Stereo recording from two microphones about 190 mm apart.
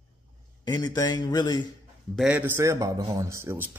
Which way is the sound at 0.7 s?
20° left (ahead or behind).